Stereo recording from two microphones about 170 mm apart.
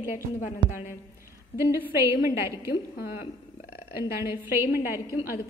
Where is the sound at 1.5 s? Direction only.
15° right (ahead or behind).